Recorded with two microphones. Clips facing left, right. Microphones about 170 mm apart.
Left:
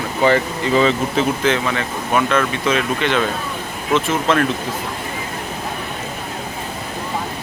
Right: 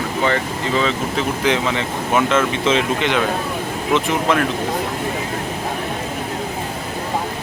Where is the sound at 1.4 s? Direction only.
20° right (ahead or behind).